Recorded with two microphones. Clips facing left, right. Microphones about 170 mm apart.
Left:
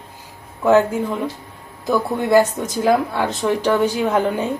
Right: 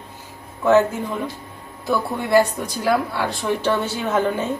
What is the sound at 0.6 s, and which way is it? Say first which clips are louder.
Speech: left 1 dB; 10° left (ahead or behind).